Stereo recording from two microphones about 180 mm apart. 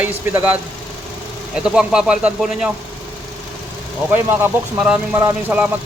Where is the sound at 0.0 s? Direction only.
10° right (ahead or behind).